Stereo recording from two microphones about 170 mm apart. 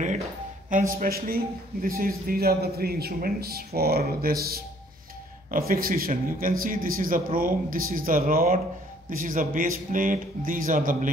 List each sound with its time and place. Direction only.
0.7 s a man's voice: 50° right (ahead or behind)